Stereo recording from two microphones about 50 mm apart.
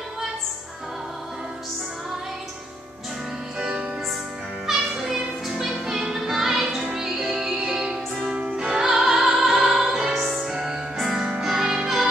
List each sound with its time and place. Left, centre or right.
3.5 s music: centre
4.6 s music: centre